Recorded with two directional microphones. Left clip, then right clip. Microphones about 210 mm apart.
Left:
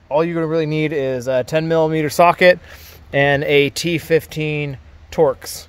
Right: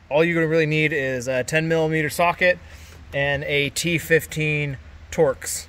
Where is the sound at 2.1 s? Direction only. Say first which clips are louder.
Left 10 dB; 30° left (ahead or behind).